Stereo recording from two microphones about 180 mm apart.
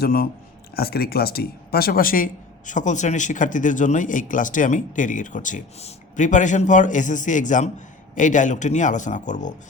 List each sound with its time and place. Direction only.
0.0 s speech: 55° left (ahead or behind)